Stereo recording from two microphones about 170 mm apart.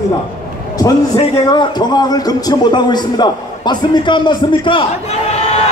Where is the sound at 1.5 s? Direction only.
25° left (ahead or behind).